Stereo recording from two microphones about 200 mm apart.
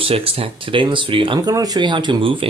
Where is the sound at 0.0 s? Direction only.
30° right (ahead or behind).